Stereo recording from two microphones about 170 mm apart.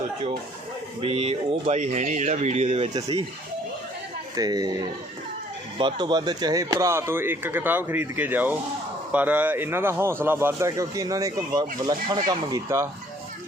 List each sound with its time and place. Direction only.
1.0 s speech: 35° right (ahead or behind)
2.9 s speech: 25° right (ahead or behind)
4.4 s speech: 25° right (ahead or behind)
5.7 s speech: 25° right (ahead or behind)